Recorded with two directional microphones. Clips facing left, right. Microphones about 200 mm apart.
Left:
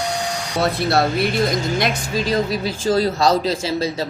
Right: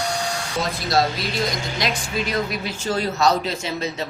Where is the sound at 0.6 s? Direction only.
65° left (ahead or behind).